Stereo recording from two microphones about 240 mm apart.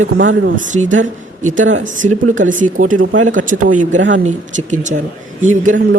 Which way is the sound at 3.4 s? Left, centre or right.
Right.